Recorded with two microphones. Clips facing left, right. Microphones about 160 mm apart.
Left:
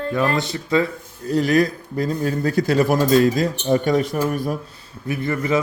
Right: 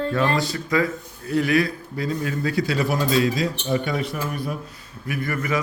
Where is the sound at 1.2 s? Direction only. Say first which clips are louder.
Left 3 dB; 40° left (ahead or behind).